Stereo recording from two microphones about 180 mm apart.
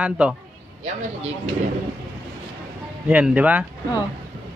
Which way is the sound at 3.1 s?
5° right (ahead or behind).